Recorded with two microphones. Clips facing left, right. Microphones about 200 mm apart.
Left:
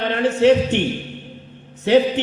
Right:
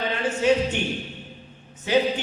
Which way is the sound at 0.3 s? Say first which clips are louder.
Left 6 dB; 65° left (ahead or behind).